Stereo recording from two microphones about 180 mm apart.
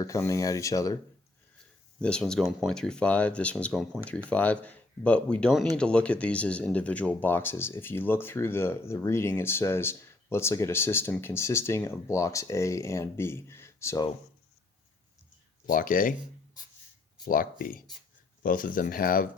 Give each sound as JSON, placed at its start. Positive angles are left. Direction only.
{"t": 0.0, "sound": "speech", "side_deg": 15}
{"t": 2.0, "sound": "speech", "side_deg": 5}
{"t": 15.6, "sound": "speech", "side_deg": 50}
{"t": 17.2, "sound": "speech", "side_deg": 50}